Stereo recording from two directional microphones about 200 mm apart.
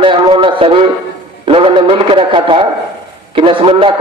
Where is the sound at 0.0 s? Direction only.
25° right (ahead or behind).